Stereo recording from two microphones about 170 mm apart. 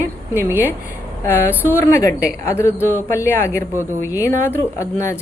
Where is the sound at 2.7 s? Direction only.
10° right (ahead or behind).